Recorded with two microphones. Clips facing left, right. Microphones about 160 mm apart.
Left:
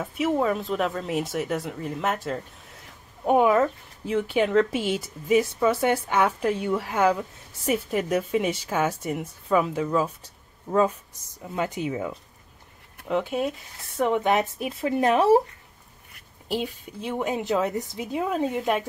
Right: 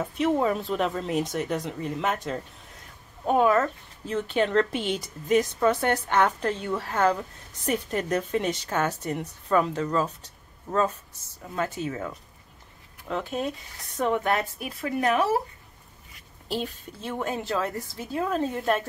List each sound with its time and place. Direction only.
0.0 s speech: centre (ahead or behind)
3.3 s a woman's voice: 15° left (ahead or behind)
13.1 s a woman's voice: 10° left (ahead or behind); by 15.4 s 30° left (ahead or behind)
16.4 s a woman's voice: 10° left (ahead or behind)